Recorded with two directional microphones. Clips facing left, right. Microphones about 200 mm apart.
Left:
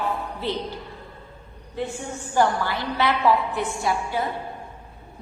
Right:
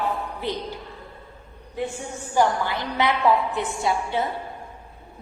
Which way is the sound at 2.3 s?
15° right (ahead or behind).